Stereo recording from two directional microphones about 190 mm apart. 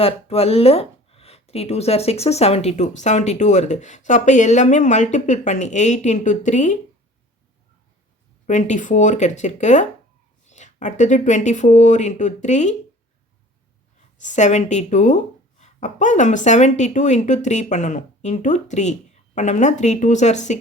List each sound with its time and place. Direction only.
0.0 s speech: 30° left (ahead or behind)
8.4 s speech: 40° left (ahead or behind)
14.2 s speech: 40° left (ahead or behind)